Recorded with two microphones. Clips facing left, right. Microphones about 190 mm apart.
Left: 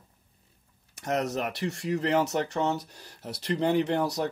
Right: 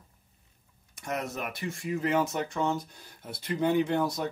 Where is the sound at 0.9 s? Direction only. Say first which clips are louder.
Left 5 dB; 70° left (ahead or behind).